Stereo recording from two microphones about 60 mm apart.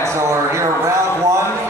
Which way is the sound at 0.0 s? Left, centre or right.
Right.